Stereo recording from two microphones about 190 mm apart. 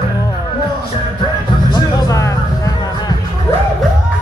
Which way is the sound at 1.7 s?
20° left (ahead or behind).